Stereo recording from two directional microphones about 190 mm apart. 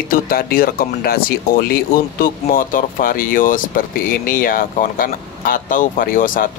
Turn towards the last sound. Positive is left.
turn(degrees=45)  # may be behind; listen again after turning